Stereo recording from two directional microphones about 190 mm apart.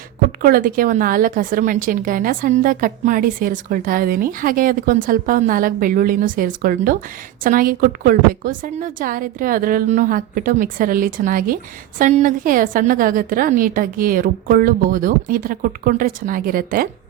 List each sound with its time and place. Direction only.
0.3 s a woman's voice: 50° right (ahead or behind)